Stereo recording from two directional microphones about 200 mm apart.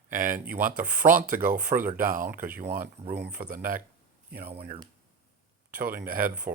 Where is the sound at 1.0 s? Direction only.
45° right (ahead or behind).